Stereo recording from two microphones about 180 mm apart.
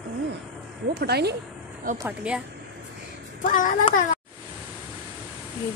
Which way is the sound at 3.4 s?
45° left (ahead or behind).